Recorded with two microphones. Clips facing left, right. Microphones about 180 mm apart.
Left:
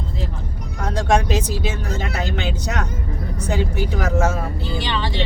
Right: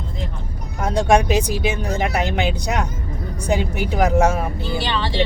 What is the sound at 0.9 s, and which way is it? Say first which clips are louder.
Speech: right 3 dB; 15° right (ahead or behind).